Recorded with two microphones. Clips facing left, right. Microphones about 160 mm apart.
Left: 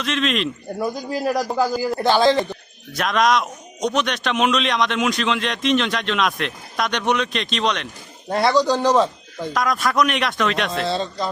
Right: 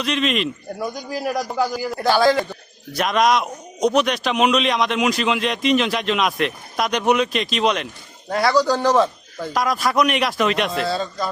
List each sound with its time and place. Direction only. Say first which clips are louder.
0.0 s speech: right 1 dB; centre (ahead or behind)
1.5 s a man's voice: left 2 dB; 25° left (ahead or behind)
2.9 s speech: right 1 dB; centre (ahead or behind)
8.3 s speech: even; 25° left (ahead or behind)
9.5 s speech: right 1 dB; centre (ahead or behind)
10.8 s a man's voice: even; 25° left (ahead or behind)